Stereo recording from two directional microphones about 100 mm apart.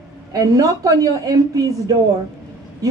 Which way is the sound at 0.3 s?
35° right (ahead or behind).